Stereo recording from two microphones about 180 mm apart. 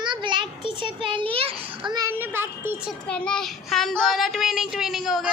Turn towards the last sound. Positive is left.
turn(degrees=0)  # may be behind; listen again after turning